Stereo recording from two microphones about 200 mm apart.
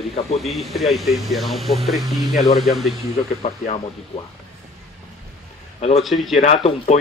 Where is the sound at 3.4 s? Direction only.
30° left (ahead or behind).